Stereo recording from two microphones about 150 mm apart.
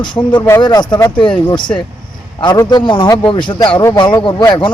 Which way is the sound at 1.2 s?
5° left (ahead or behind).